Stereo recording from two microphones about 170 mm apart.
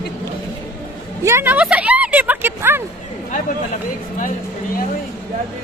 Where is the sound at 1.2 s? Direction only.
15° right (ahead or behind).